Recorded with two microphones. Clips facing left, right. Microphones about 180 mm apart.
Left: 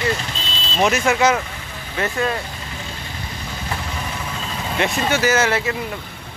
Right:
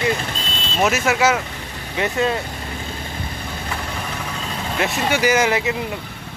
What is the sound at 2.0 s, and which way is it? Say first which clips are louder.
Speech: right 2 dB; 20° right (ahead or behind).